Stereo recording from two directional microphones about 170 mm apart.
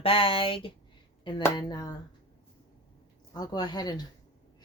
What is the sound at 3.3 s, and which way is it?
Speech, 25° left (ahead or behind).